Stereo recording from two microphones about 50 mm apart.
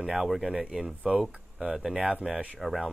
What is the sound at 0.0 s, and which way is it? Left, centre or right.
Speech, centre.